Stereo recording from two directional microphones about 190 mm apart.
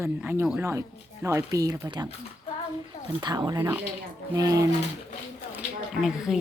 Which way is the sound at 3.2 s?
20° right (ahead or behind).